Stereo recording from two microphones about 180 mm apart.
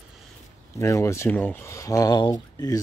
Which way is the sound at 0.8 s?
15° left (ahead or behind).